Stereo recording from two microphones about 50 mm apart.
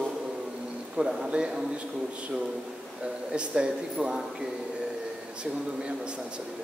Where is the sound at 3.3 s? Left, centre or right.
Centre.